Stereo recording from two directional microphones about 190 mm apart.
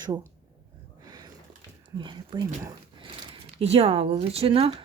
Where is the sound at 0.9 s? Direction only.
20° right (ahead or behind).